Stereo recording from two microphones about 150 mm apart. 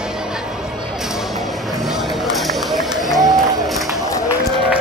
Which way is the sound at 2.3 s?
Centre (ahead or behind).